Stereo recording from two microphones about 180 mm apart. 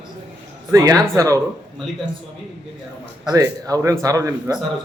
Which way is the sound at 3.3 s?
20° right (ahead or behind).